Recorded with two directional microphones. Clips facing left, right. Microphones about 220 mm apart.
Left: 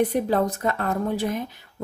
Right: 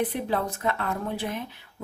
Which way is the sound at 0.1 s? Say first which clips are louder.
Left 6 dB; 40° left (ahead or behind).